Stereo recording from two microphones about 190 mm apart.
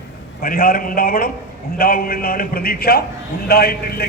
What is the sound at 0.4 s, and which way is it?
A man's voice, 50° left (ahead or behind).